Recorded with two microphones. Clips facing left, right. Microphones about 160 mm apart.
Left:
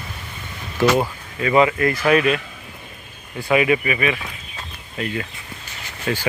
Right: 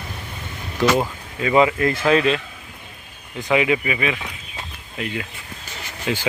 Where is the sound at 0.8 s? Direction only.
15° left (ahead or behind).